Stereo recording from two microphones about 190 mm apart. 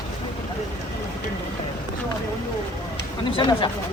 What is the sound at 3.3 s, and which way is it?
Speech, 25° left (ahead or behind).